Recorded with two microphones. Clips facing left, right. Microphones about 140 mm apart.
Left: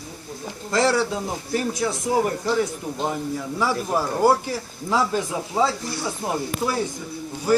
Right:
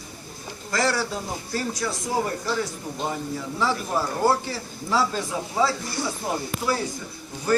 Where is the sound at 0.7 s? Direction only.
25° left (ahead or behind).